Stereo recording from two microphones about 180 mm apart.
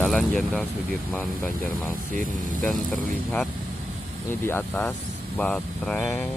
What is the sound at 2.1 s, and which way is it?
Speech, 50° right (ahead or behind).